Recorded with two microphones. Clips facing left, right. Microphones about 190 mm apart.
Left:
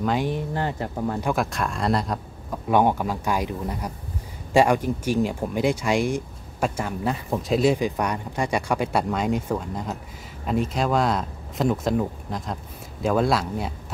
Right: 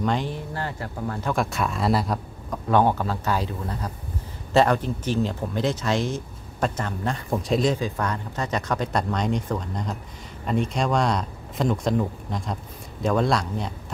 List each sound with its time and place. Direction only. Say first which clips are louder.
0.0 s speech: left 2 dB; 10° left (ahead or behind)
1.3 s speech: even; centre (ahead or behind)
2.7 s speech: even; 15° left (ahead or behind)
7.7 s speech: left 2 dB; 15° left (ahead or behind)